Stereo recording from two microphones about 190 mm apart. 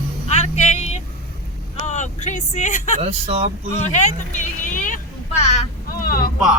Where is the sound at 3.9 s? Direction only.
40° left (ahead or behind).